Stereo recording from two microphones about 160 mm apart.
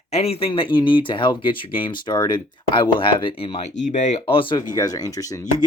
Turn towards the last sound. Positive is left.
turn(degrees=20)  # may be behind; listen again after turning